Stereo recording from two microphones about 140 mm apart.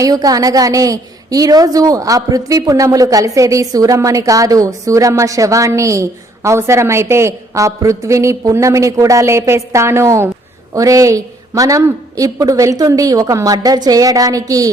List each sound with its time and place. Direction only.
0.0 s a woman's voice: 25° right (ahead or behind)